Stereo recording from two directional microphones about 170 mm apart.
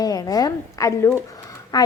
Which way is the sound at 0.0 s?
20° left (ahead or behind).